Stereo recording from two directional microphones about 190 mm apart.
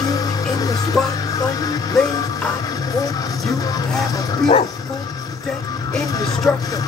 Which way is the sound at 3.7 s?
20° left (ahead or behind).